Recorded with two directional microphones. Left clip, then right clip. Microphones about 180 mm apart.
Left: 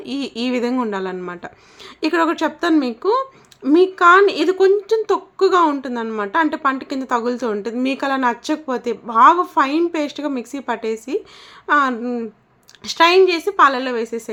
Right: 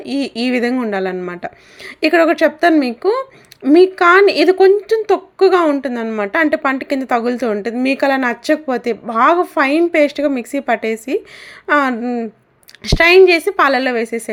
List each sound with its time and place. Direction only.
0.0 s speech: 15° right (ahead or behind)